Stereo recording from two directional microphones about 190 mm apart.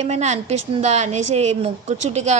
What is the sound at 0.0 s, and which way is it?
A woman's voice, 35° right (ahead or behind).